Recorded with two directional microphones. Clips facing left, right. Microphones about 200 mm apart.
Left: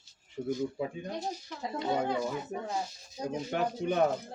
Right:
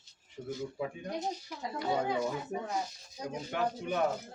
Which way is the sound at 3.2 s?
25° left (ahead or behind).